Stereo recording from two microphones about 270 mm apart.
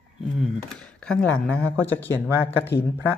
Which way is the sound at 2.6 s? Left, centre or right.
Left.